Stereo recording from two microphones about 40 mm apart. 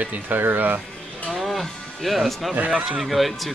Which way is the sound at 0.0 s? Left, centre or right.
Right.